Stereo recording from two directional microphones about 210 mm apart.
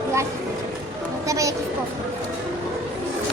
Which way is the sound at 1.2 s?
15° right (ahead or behind).